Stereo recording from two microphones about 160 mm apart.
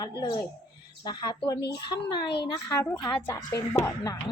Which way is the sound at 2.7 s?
20° left (ahead or behind).